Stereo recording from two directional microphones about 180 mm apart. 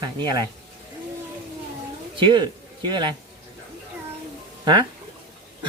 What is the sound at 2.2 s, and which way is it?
Speech, 25° right (ahead or behind).